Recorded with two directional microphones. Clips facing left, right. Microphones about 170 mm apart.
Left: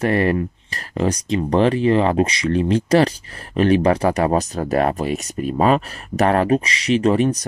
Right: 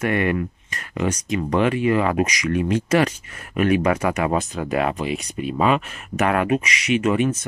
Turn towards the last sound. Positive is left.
turn(degrees=35)  # may be behind; listen again after turning